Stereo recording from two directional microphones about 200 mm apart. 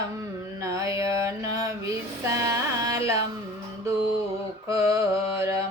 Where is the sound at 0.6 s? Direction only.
15° right (ahead or behind).